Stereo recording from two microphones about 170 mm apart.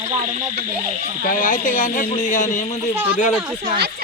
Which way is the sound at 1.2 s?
55° left (ahead or behind).